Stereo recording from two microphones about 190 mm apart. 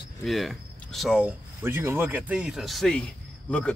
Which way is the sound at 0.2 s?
Centre (ahead or behind).